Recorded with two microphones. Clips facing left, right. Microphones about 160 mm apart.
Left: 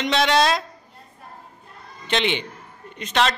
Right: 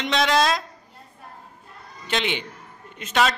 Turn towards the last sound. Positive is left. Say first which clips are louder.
# even
turn(degrees=-5)  # may be behind; listen again after turning